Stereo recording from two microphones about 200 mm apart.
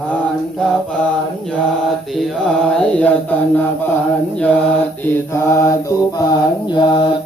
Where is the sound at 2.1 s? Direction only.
Centre (ahead or behind).